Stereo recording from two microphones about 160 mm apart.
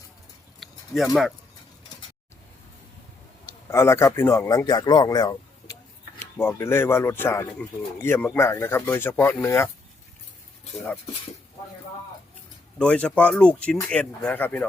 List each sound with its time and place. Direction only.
0.6 s a sound: centre (ahead or behind)
3.7 s speech: 15° left (ahead or behind)
12.8 s speech: 5° left (ahead or behind)